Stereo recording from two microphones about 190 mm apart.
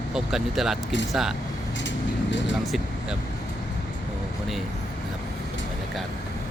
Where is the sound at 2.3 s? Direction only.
70° left (ahead or behind).